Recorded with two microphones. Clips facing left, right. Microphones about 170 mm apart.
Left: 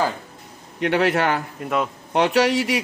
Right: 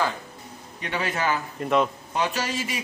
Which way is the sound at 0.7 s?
70° left (ahead or behind).